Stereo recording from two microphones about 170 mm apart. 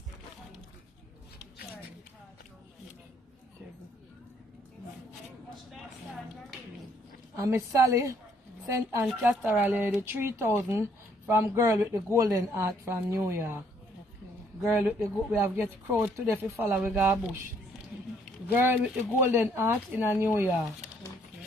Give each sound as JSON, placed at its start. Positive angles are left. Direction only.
{"t": 7.3, "sound": "a woman's voice", "side_deg": -20}
{"t": 9.0, "sound": "speech", "side_deg": -5}
{"t": 14.7, "sound": "speech", "side_deg": -10}
{"t": 18.5, "sound": "speech", "side_deg": -10}